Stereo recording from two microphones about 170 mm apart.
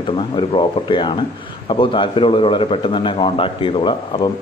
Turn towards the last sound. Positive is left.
turn(degrees=30)  # may be behind; listen again after turning